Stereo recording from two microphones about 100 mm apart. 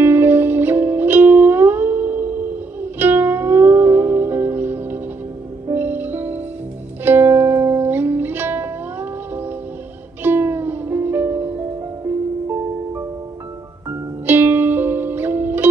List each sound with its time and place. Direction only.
0.0 s music: 20° right (ahead or behind)
10.2 s music: 20° right (ahead or behind)
13.8 s music: 20° right (ahead or behind)